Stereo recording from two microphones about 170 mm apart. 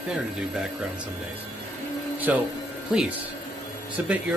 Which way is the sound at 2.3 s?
10° right (ahead or behind).